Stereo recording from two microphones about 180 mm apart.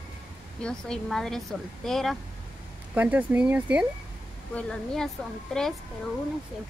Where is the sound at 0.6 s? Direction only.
5° left (ahead or behind).